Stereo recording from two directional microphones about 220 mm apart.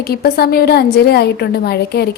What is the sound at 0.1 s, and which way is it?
A woman's voice, 45° left (ahead or behind).